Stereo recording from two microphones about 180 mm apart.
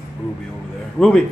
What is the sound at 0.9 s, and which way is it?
Speech, centre (ahead or behind).